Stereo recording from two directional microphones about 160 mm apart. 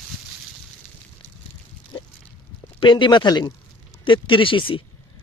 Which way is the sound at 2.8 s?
30° left (ahead or behind).